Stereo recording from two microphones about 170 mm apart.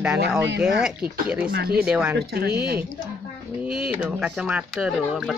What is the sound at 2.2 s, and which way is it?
Speech, 70° right (ahead or behind).